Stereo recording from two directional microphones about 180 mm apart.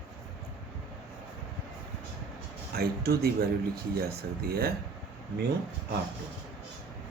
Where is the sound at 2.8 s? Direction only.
60° right (ahead or behind).